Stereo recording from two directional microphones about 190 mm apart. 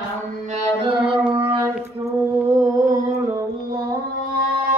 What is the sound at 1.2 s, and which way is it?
Music, 10° right (ahead or behind).